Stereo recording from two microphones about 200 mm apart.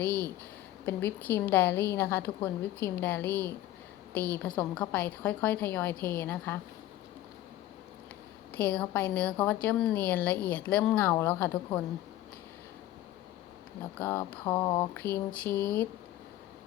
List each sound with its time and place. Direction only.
0.0 s speech: 15° right (ahead or behind)
0.9 s a woman's voice: 10° left (ahead or behind)
8.5 s a woman's voice: 5° left (ahead or behind)
14.0 s mantra: 10° left (ahead or behind)
15.1 s a woman's voice: 10° left (ahead or behind)